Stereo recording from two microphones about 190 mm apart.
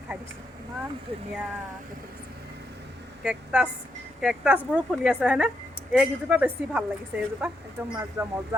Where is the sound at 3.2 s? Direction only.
5° right (ahead or behind).